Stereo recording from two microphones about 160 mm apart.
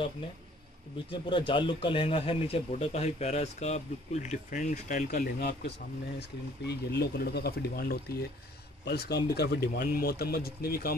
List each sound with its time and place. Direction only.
1.2 s speech: 30° left (ahead or behind); by 8.2 s 75° left (ahead or behind)
8.8 s speech: 90° left
9.8 s speech: 70° left (ahead or behind)